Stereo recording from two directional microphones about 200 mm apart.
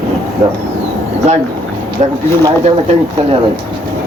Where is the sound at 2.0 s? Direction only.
30° right (ahead or behind).